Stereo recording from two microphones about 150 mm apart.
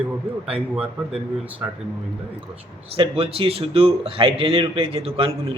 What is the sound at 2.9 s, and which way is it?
A man's voice, 40° right (ahead or behind).